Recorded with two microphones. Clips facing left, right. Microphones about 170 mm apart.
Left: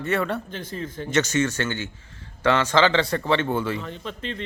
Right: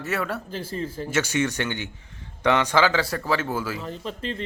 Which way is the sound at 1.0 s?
10° right (ahead or behind).